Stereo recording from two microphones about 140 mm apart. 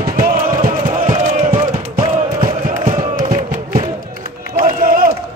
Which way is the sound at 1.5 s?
35° right (ahead or behind).